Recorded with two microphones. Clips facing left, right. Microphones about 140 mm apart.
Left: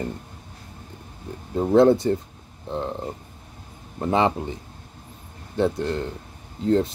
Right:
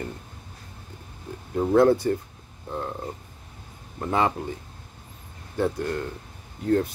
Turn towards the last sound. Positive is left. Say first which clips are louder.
# left 2 dB
turn(degrees=25)  # may be behind; listen again after turning